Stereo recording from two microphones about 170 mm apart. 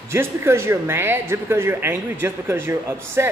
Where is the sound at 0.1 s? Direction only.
15° right (ahead or behind).